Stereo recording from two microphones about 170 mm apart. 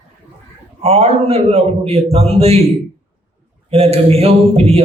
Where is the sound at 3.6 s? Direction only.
35° right (ahead or behind).